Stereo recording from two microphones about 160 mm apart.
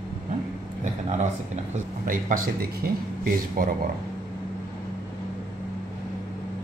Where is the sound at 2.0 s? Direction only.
60° right (ahead or behind).